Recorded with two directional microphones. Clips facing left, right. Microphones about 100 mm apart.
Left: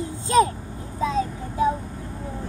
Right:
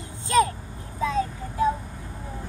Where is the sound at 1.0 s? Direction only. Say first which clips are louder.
Left 1 dB; 20° left (ahead or behind).